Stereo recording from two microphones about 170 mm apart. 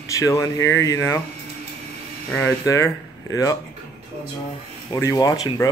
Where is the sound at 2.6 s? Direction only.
20° left (ahead or behind).